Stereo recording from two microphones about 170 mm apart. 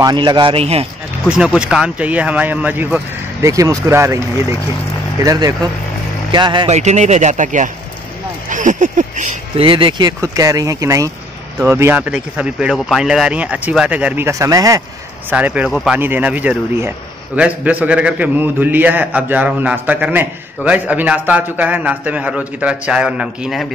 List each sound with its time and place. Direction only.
0.0 s speech: 25° right (ahead or behind)
1.3 s a man's voice: 5° right (ahead or behind); by 6.7 s 25° right (ahead or behind)
6.7 s speech: 45° right (ahead or behind)
9.6 s a man's voice: 30° right (ahead or behind)
15.2 s a man's voice: 10° right (ahead or behind)